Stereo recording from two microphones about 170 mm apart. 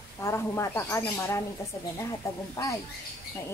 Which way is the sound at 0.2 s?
15° left (ahead or behind).